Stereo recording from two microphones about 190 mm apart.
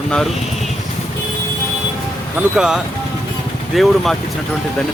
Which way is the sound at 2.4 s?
5° right (ahead or behind).